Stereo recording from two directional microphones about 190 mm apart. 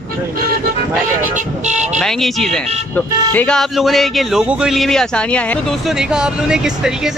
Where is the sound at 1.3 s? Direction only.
40° right (ahead or behind).